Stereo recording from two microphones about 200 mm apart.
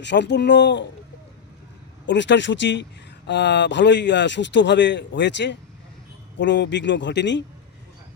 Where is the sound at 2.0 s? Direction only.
60° left (ahead or behind).